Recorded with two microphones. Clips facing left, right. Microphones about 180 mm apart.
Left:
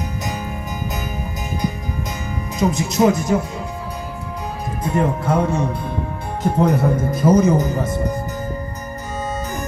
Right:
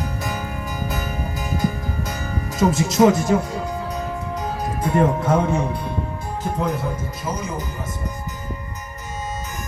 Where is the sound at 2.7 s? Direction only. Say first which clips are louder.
Right 1 dB; 25° right (ahead or behind).